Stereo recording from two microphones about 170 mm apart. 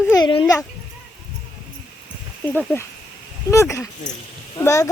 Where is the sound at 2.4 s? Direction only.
5° left (ahead or behind).